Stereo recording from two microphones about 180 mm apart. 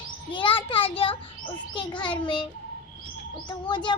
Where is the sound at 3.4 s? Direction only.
25° left (ahead or behind).